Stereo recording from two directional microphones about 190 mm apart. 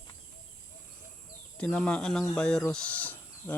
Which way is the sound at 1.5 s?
5° left (ahead or behind).